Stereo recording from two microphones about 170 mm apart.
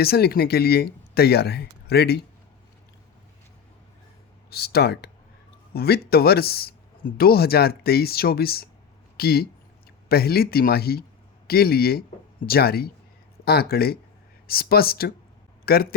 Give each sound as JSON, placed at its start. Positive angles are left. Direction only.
{"t": 0.0, "sound": "speech", "side_deg": 65}
{"t": 4.4, "sound": "a man's voice", "side_deg": 70}